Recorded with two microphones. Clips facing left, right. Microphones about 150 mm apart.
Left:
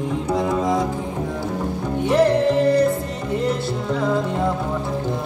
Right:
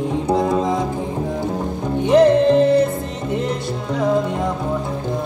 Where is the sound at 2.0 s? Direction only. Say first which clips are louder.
Right 5 dB; 20° right (ahead or behind).